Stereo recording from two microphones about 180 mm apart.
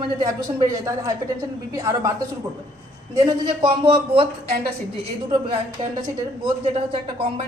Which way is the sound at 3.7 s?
30° right (ahead or behind).